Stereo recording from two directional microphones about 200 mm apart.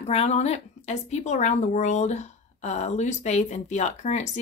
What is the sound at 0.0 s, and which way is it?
A woman's voice, 30° left (ahead or behind).